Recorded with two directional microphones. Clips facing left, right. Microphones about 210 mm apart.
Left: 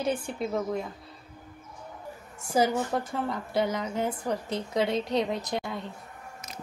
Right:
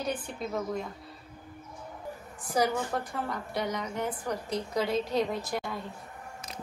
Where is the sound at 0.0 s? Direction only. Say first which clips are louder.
Left 4 dB; 25° left (ahead or behind).